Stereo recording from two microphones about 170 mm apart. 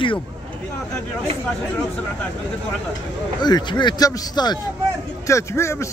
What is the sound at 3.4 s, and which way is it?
A man's voice, 25° left (ahead or behind).